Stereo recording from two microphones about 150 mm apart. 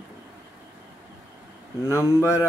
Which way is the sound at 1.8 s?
15° left (ahead or behind).